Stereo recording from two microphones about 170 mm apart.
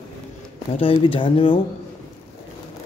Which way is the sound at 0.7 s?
30° left (ahead or behind).